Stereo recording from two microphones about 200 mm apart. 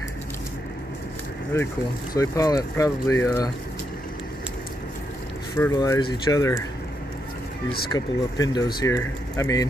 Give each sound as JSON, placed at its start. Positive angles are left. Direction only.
{"t": 1.5, "sound": "speech", "side_deg": 15}
{"t": 5.6, "sound": "speech", "side_deg": 15}
{"t": 7.9, "sound": "speech", "side_deg": 20}